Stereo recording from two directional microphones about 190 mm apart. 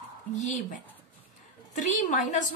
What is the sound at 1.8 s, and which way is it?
Speech, 40° left (ahead or behind).